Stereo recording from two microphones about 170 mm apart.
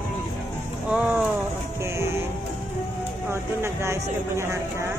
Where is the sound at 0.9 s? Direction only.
5° right (ahead or behind).